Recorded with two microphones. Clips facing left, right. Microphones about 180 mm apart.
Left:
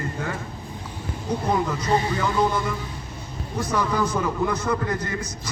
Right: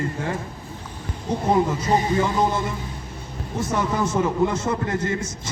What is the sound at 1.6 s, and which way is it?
A man's voice, 25° right (ahead or behind).